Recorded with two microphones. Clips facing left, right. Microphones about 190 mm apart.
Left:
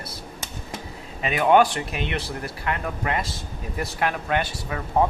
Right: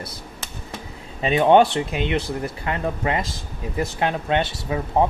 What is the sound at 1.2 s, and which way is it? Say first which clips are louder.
Speech: right 3 dB; 25° right (ahead or behind).